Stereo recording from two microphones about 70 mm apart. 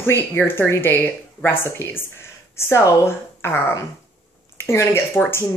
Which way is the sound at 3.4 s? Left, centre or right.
Left.